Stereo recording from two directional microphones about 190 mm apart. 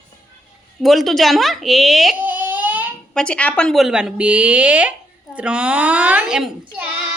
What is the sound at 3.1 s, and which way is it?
A woman's voice, 5° left (ahead or behind).